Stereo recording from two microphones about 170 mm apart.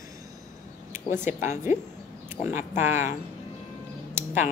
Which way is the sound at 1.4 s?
45° left (ahead or behind).